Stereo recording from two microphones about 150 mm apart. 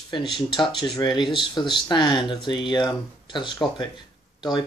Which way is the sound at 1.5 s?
30° left (ahead or behind).